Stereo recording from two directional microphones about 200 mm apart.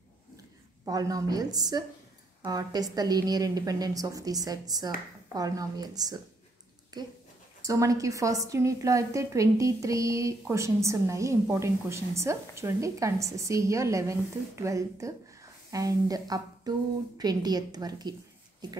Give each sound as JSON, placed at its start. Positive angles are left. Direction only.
{"t": 0.8, "sound": "a woman's voice", "side_deg": -20}